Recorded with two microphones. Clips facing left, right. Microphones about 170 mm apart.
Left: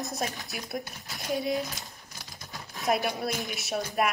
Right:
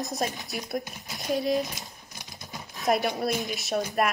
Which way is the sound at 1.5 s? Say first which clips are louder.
Right 4 dB; 20° right (ahead or behind).